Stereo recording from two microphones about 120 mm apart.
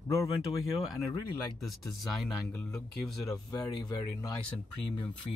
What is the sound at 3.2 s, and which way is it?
Speech, 30° left (ahead or behind).